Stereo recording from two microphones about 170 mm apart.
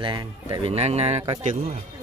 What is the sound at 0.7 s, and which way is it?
Speech, 40° right (ahead or behind).